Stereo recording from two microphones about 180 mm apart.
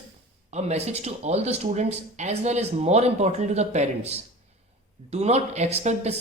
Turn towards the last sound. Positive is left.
turn(degrees=-35)  # may be behind; listen again after turning